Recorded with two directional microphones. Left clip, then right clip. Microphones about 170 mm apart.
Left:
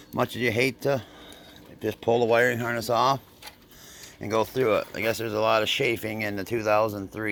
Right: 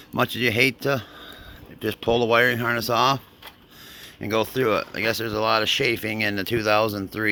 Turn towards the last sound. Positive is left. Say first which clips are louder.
# right 2 dB
turn(degrees=-35)  # may be behind; listen again after turning